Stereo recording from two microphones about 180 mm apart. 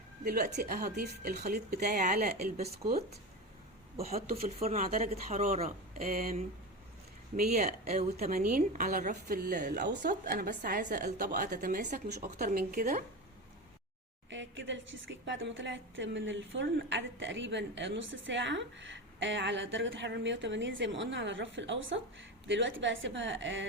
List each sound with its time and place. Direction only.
0.3 s speech: 60° right (ahead or behind)
2.6 s a woman's voice: 35° right (ahead or behind)
4.4 s a woman's voice: 40° right (ahead or behind)
7.5 s a woman's voice: 40° right (ahead or behind)
14.3 s a woman's voice: 90° right